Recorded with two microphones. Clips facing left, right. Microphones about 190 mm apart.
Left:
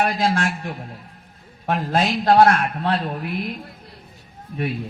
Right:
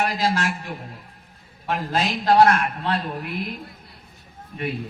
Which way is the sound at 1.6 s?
55° left (ahead or behind).